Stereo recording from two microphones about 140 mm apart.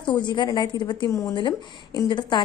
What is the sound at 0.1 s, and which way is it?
A woman's voice, 35° left (ahead or behind).